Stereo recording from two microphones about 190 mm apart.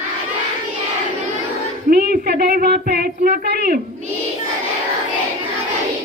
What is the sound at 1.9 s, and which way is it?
Speech, 55° right (ahead or behind).